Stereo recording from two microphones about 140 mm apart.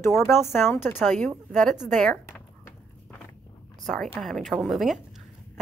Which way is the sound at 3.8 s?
5° left (ahead or behind).